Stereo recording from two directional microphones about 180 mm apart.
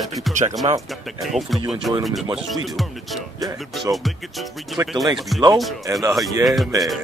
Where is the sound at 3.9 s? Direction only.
15° right (ahead or behind).